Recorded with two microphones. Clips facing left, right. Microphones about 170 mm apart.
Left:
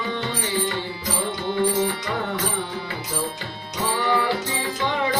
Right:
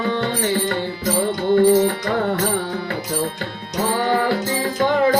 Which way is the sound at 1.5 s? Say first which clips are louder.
Right 8 dB; 50° right (ahead or behind).